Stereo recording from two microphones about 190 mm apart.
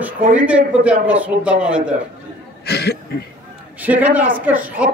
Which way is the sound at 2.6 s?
60° left (ahead or behind).